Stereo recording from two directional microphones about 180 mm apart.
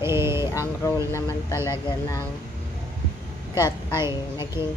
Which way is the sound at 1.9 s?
20° left (ahead or behind).